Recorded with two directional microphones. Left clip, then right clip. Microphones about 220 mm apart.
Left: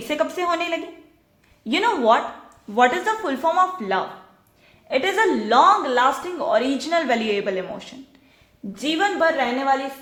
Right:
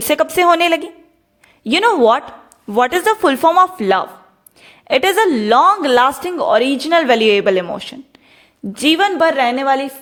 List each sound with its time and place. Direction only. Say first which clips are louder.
0.1 s a woman's voice: right 10 dB; 50° right (ahead or behind)